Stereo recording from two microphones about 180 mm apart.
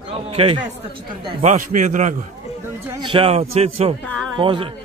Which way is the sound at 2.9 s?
25° right (ahead or behind).